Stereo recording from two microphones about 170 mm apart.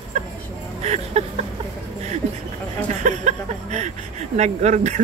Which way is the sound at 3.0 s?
45° right (ahead or behind).